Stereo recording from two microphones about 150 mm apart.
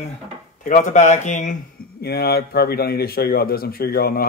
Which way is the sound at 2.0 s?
90° left.